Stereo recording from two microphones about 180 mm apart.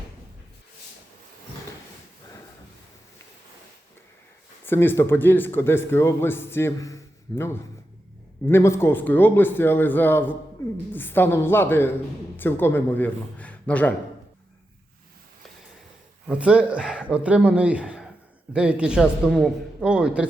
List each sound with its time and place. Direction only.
4.6 s a man's voice: 10° left (ahead or behind)
16.2 s a man's voice: 5° right (ahead or behind)